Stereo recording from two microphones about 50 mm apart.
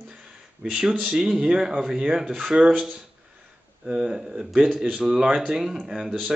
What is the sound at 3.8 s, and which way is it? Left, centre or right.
Speech, centre.